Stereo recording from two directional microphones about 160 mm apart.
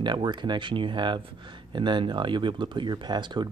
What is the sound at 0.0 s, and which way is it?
Speech, 30° right (ahead or behind).